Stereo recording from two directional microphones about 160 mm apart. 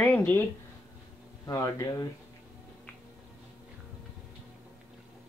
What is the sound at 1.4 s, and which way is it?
Speech, 25° left (ahead or behind).